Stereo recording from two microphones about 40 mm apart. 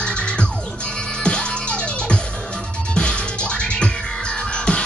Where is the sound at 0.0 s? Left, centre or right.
Left.